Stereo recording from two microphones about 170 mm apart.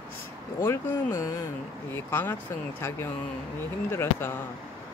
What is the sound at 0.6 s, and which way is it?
Speech, 15° left (ahead or behind).